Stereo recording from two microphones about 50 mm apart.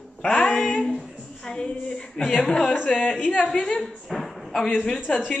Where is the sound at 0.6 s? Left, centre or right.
Centre.